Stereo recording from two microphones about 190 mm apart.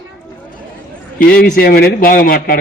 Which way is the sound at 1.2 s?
50° left (ahead or behind).